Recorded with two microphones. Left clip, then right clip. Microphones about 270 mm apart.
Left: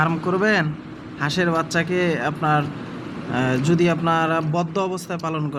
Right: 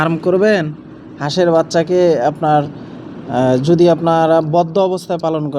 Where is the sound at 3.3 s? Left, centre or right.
Centre.